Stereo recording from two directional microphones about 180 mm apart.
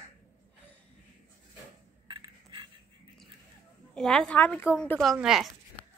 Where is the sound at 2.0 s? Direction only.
25° right (ahead or behind).